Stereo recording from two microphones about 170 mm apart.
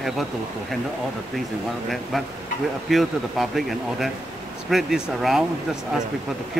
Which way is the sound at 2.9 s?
Centre (ahead or behind).